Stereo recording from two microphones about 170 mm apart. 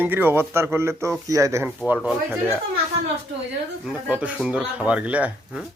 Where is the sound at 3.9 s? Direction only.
10° right (ahead or behind).